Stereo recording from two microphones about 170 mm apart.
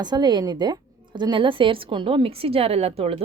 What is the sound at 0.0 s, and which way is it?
A woman's voice, 25° right (ahead or behind).